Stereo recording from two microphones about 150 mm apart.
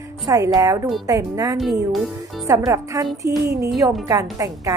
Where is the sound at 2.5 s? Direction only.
20° right (ahead or behind).